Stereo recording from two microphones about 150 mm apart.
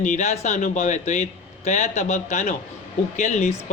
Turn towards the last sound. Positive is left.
turn(degrees=50)  # may be behind; listen again after turning